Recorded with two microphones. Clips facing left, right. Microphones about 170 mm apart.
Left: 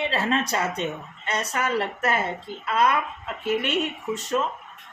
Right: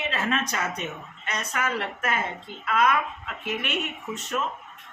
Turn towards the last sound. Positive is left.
turn(degrees=35)  # may be behind; listen again after turning